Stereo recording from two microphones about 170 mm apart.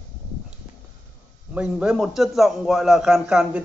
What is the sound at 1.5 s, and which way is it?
A man's voice, 5° right (ahead or behind).